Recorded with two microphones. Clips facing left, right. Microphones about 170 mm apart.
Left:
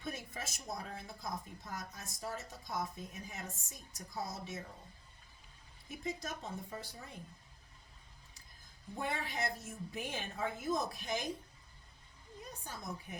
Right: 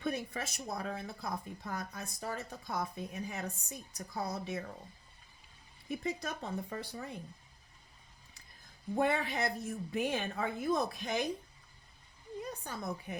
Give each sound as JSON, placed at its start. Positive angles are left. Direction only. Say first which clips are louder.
{"t": 0.0, "sound": "speech", "louder": "right 7 dB", "side_deg": -65}
{"t": 6.0, "sound": "speech", "louder": "right 1 dB", "side_deg": -65}
{"t": 9.0, "sound": "speech", "louder": "right 7 dB", "side_deg": -65}
{"t": 12.4, "sound": "a woman's voice", "louder": "right 7 dB", "side_deg": -65}